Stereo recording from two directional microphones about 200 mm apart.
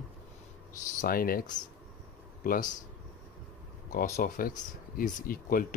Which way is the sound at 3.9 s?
40° left (ahead or behind).